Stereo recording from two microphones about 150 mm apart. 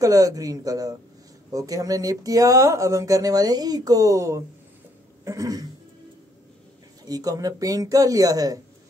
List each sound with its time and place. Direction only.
0.0 s speech: 25° right (ahead or behind)
7.1 s speech: 25° right (ahead or behind)